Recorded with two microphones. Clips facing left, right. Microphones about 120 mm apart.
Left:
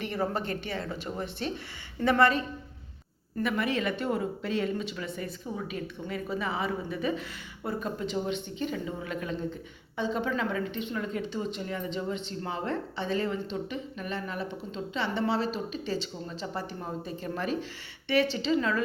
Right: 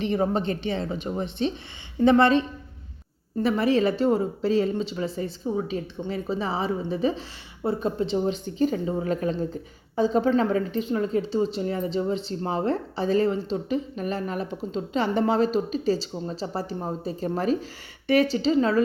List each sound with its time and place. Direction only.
0.0 s speech: 20° right (ahead or behind)
3.4 s a woman's voice: 30° right (ahead or behind)